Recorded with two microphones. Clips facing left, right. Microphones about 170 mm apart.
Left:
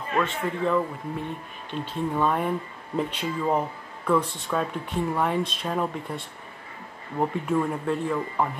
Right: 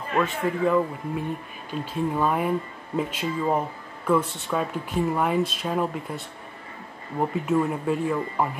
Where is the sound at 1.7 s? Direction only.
5° right (ahead or behind).